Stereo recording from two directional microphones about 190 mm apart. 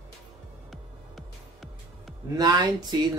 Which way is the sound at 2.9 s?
20° right (ahead or behind).